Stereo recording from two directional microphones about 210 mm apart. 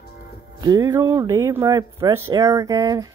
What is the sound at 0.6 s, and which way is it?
Speech, 15° right (ahead or behind).